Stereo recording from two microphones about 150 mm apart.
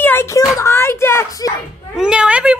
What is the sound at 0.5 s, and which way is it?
Speech, 15° left (ahead or behind).